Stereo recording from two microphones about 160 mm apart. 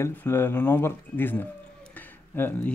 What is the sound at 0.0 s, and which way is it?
Speech, 15° left (ahead or behind).